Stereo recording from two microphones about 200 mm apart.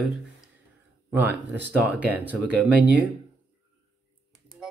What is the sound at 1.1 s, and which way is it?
Speech, 10° right (ahead or behind).